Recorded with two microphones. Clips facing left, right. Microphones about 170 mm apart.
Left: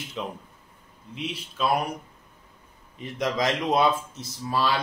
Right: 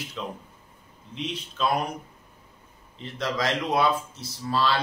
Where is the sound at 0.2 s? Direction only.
20° left (ahead or behind).